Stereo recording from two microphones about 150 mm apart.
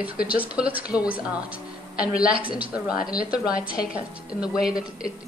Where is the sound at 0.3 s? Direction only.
10° right (ahead or behind).